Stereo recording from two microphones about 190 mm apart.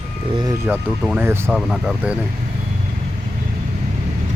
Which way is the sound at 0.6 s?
10° right (ahead or behind).